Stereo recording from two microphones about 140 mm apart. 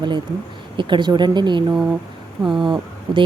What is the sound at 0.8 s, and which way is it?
Speech, 35° right (ahead or behind).